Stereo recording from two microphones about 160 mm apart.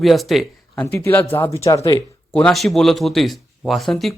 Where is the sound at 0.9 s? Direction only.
10° left (ahead or behind).